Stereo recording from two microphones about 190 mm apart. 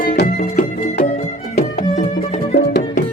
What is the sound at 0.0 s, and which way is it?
Music, 50° left (ahead or behind).